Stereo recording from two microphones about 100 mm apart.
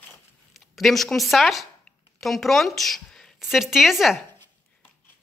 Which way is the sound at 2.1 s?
Centre (ahead or behind).